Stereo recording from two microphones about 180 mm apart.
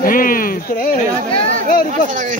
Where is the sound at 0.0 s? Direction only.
50° left (ahead or behind).